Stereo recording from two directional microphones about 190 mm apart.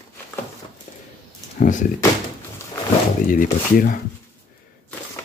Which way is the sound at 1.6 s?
40° left (ahead or behind).